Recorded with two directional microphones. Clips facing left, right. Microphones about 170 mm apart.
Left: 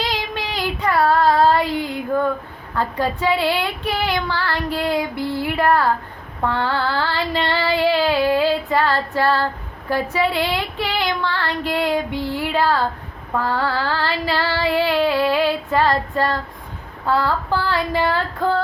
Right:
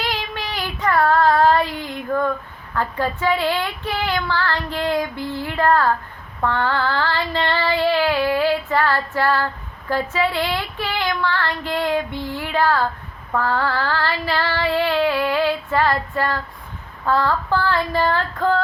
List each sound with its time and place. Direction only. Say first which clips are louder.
0.0 s child singing: left 2 dB; 15° left (ahead or behind)
17.1 s child singing: even; 10° left (ahead or behind)